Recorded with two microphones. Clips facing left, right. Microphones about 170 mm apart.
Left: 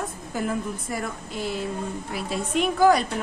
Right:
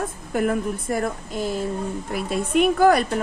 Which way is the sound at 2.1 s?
55° right (ahead or behind).